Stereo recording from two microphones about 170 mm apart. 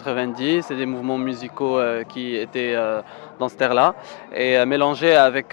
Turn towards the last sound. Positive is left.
turn(degrees=10)  # may be behind; listen again after turning